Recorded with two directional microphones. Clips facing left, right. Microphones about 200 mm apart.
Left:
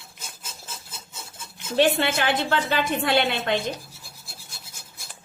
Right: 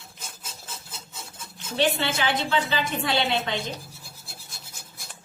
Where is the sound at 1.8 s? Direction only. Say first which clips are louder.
Left 4 dB; 55° left (ahead or behind).